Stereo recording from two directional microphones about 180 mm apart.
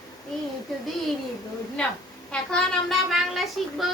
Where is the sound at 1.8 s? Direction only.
5° left (ahead or behind).